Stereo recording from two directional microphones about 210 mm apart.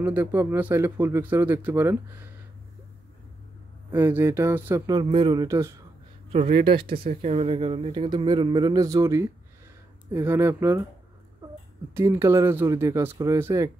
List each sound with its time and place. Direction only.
0.0 s speech: 10° right (ahead or behind)
3.9 s speech: 10° right (ahead or behind)
6.4 s speech: 40° right (ahead or behind)
6.7 s speech: 25° right (ahead or behind)
11.9 s speech: 15° right (ahead or behind)